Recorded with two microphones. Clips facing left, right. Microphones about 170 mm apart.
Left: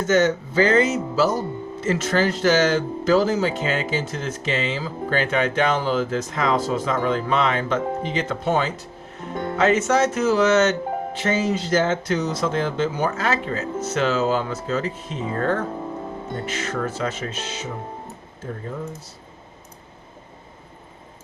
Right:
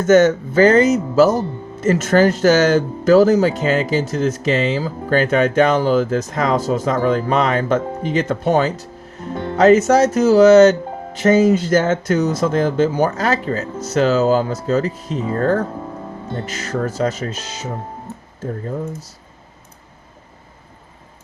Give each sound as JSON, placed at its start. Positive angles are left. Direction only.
{"t": 0.0, "sound": "speech", "side_deg": -45}